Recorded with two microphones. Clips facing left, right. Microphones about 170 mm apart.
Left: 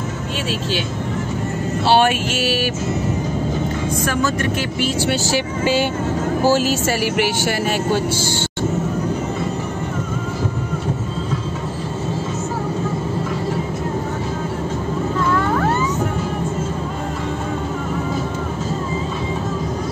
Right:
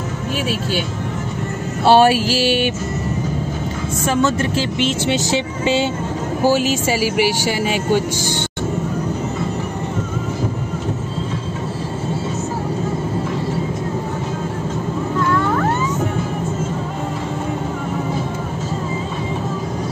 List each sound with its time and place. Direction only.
1.9 s music: 35° right (ahead or behind)
4.0 s speech: 25° right (ahead or behind)